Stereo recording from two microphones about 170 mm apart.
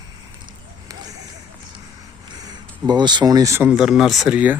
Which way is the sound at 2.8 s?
25° right (ahead or behind).